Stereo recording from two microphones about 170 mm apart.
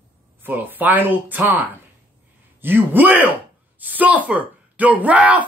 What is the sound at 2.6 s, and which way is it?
A woman's voice, 10° right (ahead or behind).